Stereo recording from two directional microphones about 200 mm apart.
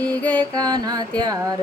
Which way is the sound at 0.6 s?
20° right (ahead or behind).